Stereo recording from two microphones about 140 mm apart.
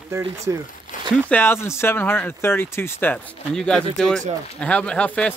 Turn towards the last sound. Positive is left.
turn(degrees=10)  # may be behind; listen again after turning